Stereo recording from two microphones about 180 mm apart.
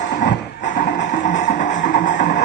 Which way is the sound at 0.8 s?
70° left (ahead or behind).